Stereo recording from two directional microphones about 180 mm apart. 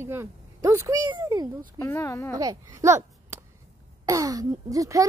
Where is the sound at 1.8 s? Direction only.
15° left (ahead or behind).